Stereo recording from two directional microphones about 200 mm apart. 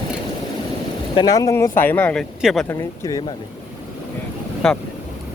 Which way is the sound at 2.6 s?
15° left (ahead or behind).